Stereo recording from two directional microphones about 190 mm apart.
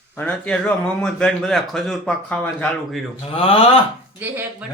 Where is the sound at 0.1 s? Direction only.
5° left (ahead or behind).